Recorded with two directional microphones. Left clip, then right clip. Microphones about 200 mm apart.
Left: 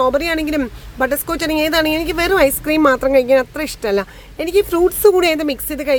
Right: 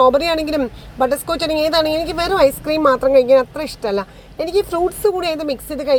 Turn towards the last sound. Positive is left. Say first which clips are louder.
# even
turn(degrees=15)  # may be behind; listen again after turning